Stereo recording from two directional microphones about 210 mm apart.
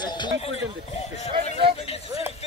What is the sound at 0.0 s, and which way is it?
Speech, 20° left (ahead or behind).